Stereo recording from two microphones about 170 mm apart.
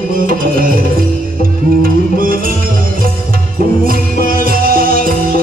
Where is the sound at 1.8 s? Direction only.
55° right (ahead or behind).